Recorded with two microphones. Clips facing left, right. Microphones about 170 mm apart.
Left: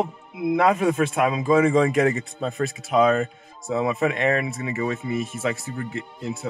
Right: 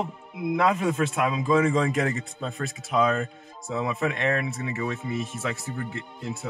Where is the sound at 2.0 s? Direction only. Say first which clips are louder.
Left 6 dB; 65° left (ahead or behind).